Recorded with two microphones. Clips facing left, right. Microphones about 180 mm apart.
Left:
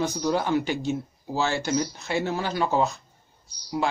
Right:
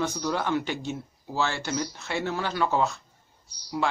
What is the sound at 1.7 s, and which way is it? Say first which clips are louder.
A man's voice: left 4 dB; 15° left (ahead or behind).